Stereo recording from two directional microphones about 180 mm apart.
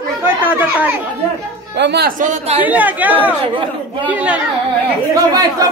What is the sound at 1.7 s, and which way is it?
Speech, 70° right (ahead or behind).